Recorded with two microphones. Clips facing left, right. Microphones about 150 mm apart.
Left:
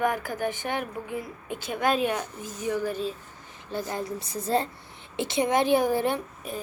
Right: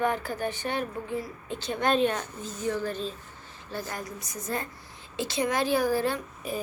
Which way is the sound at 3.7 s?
20° left (ahead or behind).